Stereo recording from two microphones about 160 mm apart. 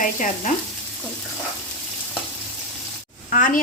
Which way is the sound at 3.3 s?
55° left (ahead or behind).